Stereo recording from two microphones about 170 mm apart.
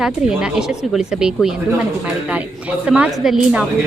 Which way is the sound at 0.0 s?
5° right (ahead or behind).